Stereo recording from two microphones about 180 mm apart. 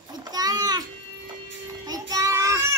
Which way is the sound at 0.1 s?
20° right (ahead or behind).